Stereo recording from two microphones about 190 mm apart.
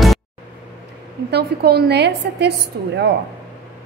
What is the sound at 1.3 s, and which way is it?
A woman's voice, 60° right (ahead or behind).